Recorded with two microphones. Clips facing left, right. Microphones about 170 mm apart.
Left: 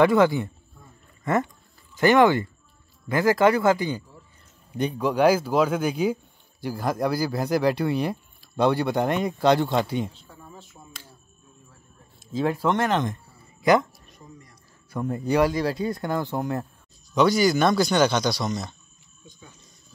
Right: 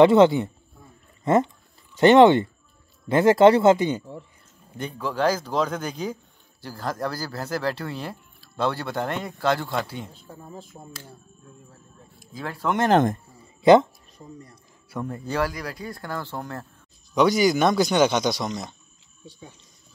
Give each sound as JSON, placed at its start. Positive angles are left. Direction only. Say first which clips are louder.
{"t": 0.0, "sound": "speech", "louder": "right 4 dB", "side_deg": -25}
{"t": 4.7, "sound": "speech", "louder": "left 5 dB", "side_deg": 15}
{"t": 10.1, "sound": "speech", "louder": "right 5 dB", "side_deg": -40}
{"t": 12.2, "sound": "a sound", "louder": "left 9 dB", "side_deg": 25}
{"t": 12.9, "sound": "speech", "louder": "right 6 dB", "side_deg": -50}
{"t": 13.6, "sound": "a sound", "louder": "right 5 dB", "side_deg": -25}
{"t": 15.0, "sound": "speech", "louder": "left 6 dB", "side_deg": 20}
{"t": 17.1, "sound": "a man's voice", "louder": "even", "side_deg": -15}